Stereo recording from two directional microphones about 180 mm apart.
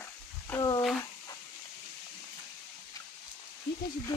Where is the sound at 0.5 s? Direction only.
20° left (ahead or behind).